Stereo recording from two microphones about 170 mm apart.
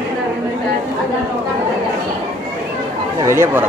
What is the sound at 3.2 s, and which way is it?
Speech, 15° right (ahead or behind).